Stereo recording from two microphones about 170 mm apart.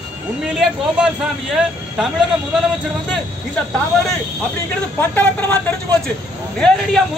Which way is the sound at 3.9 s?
Centre (ahead or behind).